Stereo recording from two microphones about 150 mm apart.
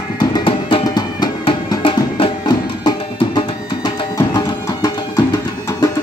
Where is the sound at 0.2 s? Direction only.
30° left (ahead or behind).